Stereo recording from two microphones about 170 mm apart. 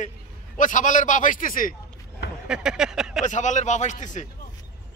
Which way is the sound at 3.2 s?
45° left (ahead or behind).